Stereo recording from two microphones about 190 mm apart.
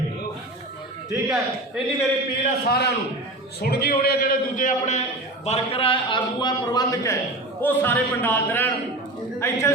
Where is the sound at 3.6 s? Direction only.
55° left (ahead or behind).